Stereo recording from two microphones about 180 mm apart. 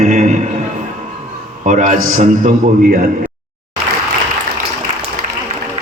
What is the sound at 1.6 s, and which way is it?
A man's voice, 45° right (ahead or behind).